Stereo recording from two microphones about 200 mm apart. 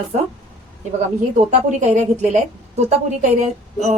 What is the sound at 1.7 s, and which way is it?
A woman's voice, 35° right (ahead or behind).